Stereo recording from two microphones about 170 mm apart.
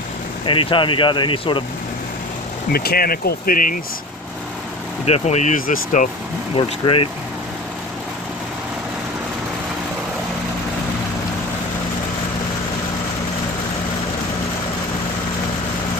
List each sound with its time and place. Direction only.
0.5 s speech: 30° left (ahead or behind)
2.7 s speech: 65° left (ahead or behind)
5.0 s speech: 40° left (ahead or behind)
6.5 s speech: 30° left (ahead or behind)